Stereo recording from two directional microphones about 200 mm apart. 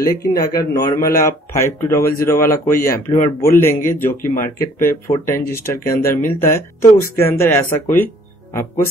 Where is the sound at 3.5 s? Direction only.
10° left (ahead or behind).